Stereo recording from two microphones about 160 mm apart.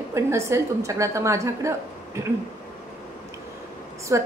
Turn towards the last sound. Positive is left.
turn(degrees=-15)  # may be behind; listen again after turning